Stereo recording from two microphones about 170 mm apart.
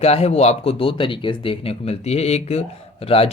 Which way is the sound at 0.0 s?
40° left (ahead or behind).